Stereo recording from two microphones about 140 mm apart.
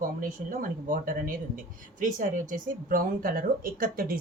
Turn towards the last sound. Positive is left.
turn(degrees=-90)